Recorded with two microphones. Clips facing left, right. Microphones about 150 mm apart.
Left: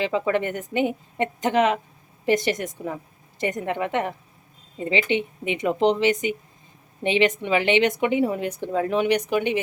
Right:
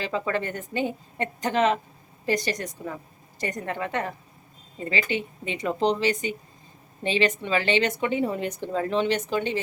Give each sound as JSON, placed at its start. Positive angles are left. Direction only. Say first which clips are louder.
{"t": 0.0, "sound": "a woman's voice", "louder": "left 5 dB", "side_deg": 20}